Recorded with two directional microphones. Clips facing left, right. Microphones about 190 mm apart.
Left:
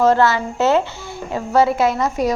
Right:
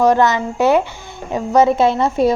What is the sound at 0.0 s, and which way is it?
Speech, 15° right (ahead or behind).